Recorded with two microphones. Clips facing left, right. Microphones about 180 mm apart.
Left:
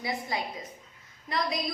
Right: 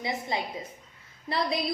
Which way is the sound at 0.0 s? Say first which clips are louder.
Right 1 dB; 20° right (ahead or behind).